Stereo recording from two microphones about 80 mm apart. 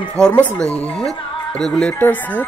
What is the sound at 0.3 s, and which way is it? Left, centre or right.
Speech, left.